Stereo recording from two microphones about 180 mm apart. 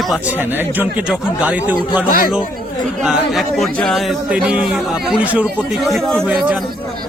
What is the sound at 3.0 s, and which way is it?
Speech, centre (ahead or behind).